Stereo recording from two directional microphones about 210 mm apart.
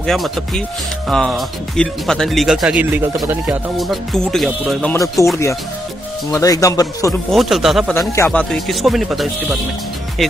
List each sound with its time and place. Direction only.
0.0 s speech: centre (ahead or behind)
5.2 s speech: 15° left (ahead or behind)
7.3 s speech: centre (ahead or behind)